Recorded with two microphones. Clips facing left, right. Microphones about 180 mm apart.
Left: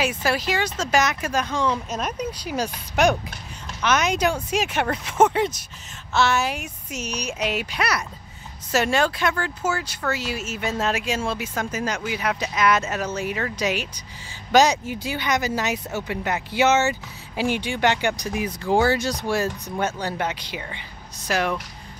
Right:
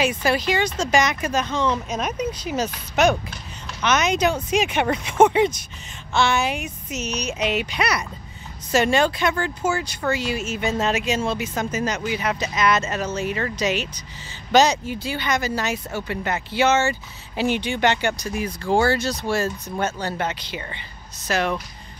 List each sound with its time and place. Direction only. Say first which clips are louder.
0.0 s speech: right 2 dB; 5° left (ahead or behind)
1.9 s speech: right 2 dB; 10° right (ahead or behind)
2.5 s speech: left 1 dB; 10° left (ahead or behind)
4.8 s speech: right 2 dB; 10° right (ahead or behind)